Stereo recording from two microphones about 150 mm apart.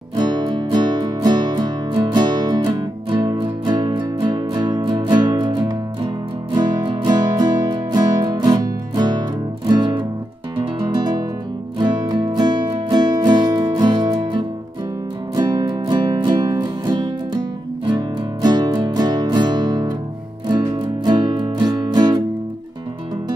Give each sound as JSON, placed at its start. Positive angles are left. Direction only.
{"t": 0.1, "sound": "music", "side_deg": -30}
{"t": 21.0, "sound": "music", "side_deg": -30}